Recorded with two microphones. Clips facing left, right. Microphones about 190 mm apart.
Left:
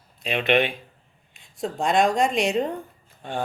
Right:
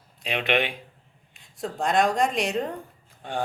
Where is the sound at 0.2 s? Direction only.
15° right (ahead or behind).